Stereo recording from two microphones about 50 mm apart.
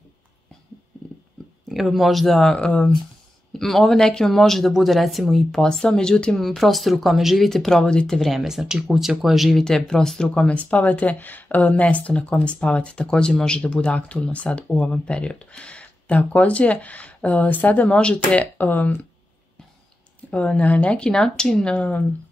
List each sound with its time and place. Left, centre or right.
1.7 s speech: centre
2.6 s speech: left
3.5 s speech: centre
5.6 s speech: centre
6.3 s speech: centre
8.2 s speech: centre
9.6 s speech: centre
18.6 s speech: left
20.2 s speech: left
21.1 s speech: centre